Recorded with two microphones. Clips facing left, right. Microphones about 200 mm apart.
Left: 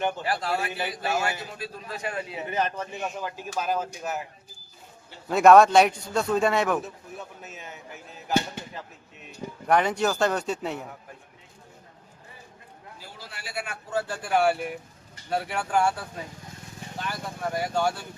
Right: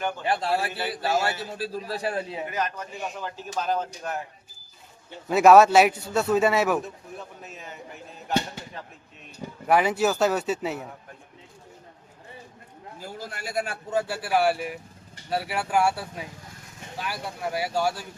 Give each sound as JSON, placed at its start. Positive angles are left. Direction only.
{"t": 0.3, "sound": "a man's voice", "side_deg": -30}
{"t": 2.5, "sound": "a man's voice", "side_deg": 30}
{"t": 3.2, "sound": "a man's voice", "side_deg": 10}
{"t": 5.3, "sound": "a man's voice", "side_deg": -5}
{"t": 9.6, "sound": "a man's voice", "side_deg": -5}
{"t": 13.0, "sound": "a man's voice", "side_deg": -45}
{"t": 13.9, "sound": "a man's voice", "side_deg": -10}